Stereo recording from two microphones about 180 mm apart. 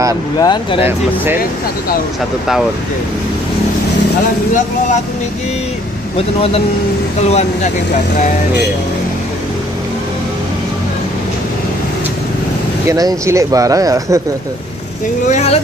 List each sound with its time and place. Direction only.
0.4 s speech: 25° left (ahead or behind)
6.1 s speech: 35° left (ahead or behind)
12.8 s speech: 20° right (ahead or behind)
15.2 s speech: 40° left (ahead or behind)